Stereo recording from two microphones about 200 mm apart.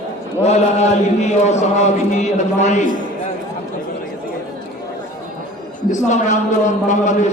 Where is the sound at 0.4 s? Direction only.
35° left (ahead or behind).